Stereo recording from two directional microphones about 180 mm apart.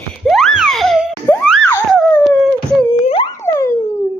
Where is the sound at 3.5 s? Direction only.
10° left (ahead or behind).